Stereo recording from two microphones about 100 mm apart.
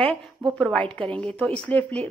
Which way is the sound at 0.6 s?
10° left (ahead or behind).